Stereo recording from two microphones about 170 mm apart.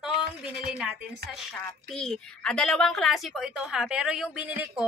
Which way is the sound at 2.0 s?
5° left (ahead or behind).